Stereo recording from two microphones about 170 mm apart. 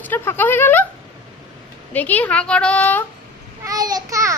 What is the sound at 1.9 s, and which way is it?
A woman's voice, 10° left (ahead or behind).